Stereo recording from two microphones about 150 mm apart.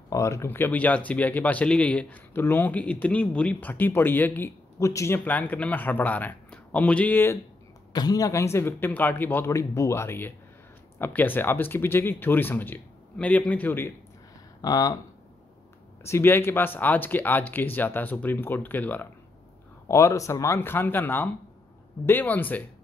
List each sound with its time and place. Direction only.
0.1 s speech: 20° left (ahead or behind)
7.9 s speech: 25° left (ahead or behind)
14.6 s speech: 25° left (ahead or behind)
16.0 s speech: 15° left (ahead or behind)